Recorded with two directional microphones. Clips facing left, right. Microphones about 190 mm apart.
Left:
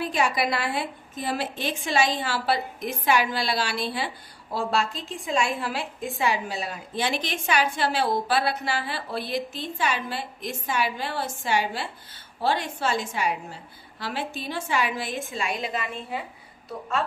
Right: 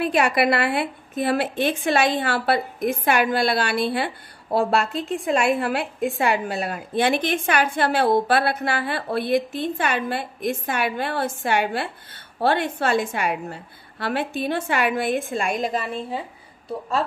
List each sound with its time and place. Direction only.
0.0 s a woman's voice: 65° right (ahead or behind); by 16.3 s 30° right (ahead or behind)